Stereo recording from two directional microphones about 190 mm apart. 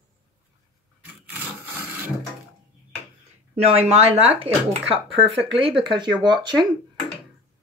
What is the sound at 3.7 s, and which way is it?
Speech, 35° right (ahead or behind).